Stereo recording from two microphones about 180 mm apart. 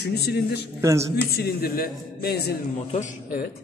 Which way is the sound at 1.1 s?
60° left (ahead or behind).